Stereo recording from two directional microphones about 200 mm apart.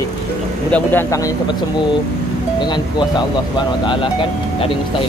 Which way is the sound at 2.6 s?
20° left (ahead or behind).